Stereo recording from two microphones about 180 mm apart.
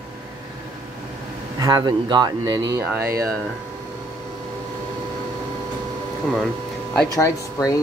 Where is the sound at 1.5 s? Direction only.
20° right (ahead or behind).